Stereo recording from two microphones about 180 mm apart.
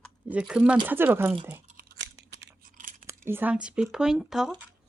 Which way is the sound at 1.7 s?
65° right (ahead or behind).